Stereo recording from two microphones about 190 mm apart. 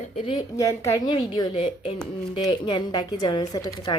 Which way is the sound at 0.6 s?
15° left (ahead or behind).